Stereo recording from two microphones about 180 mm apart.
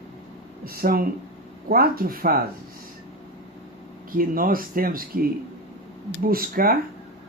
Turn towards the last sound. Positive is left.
turn(degrees=-55)  # may be behind; listen again after turning